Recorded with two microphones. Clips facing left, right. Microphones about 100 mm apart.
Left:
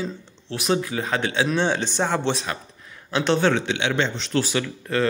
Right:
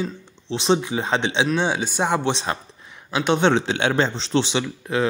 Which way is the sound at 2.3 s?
30° right (ahead or behind).